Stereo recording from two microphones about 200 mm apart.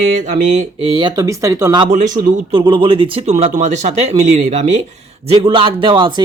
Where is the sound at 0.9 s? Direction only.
20° right (ahead or behind).